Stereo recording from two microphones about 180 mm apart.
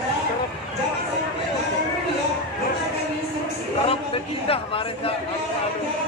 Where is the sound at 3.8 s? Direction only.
30° left (ahead or behind).